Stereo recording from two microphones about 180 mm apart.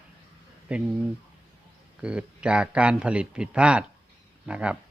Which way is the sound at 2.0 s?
5° right (ahead or behind).